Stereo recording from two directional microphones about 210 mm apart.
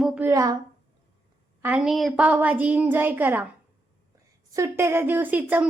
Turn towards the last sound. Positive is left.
turn(degrees=-10)  # may be behind; listen again after turning